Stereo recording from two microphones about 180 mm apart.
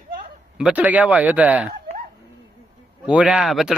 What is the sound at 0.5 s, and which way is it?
A man's voice, 5° right (ahead or behind).